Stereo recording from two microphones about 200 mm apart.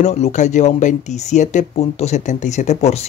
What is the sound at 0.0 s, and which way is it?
Speech, 35° left (ahead or behind).